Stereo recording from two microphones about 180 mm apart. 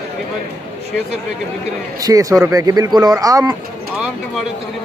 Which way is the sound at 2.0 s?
20° right (ahead or behind).